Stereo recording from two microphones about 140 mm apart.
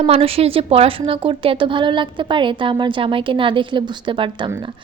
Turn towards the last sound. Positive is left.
turn(degrees=-35)  # may be behind; listen again after turning